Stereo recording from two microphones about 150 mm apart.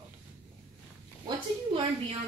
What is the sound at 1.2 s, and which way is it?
Speech, 30° right (ahead or behind).